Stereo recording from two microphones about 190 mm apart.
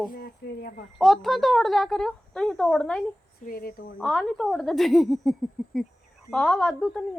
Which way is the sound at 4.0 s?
5° left (ahead or behind).